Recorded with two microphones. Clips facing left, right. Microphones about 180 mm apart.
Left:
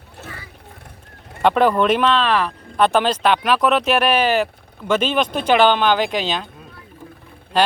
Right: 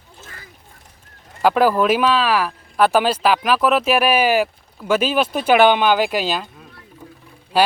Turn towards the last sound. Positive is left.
turn(degrees=-10)  # may be behind; listen again after turning